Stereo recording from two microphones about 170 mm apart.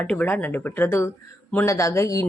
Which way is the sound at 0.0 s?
10° left (ahead or behind).